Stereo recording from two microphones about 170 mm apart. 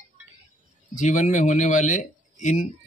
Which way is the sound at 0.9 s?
50° left (ahead or behind).